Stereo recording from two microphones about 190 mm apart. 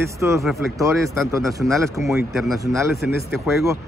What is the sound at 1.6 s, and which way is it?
A man's voice, 5° right (ahead or behind).